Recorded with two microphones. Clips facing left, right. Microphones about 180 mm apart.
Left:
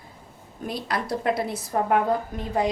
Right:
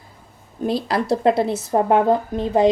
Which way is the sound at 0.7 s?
30° right (ahead or behind).